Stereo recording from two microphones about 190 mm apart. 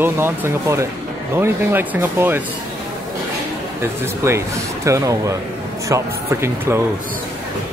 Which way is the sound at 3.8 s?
15° right (ahead or behind).